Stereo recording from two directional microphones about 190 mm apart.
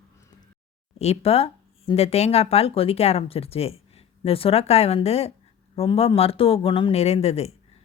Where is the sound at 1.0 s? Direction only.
35° left (ahead or behind).